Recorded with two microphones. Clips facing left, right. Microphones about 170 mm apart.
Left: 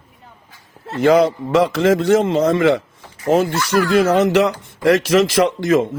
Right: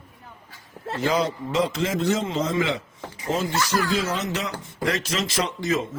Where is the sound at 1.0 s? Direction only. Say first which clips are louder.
Left 10 dB; 65° left (ahead or behind).